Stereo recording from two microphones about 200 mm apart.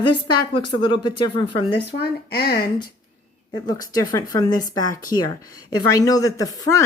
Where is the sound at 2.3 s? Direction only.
50° left (ahead or behind).